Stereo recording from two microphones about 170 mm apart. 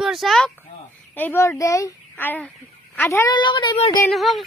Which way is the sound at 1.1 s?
15° left (ahead or behind).